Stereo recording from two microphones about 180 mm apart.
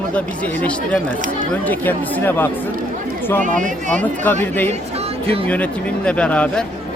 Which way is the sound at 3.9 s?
10° left (ahead or behind).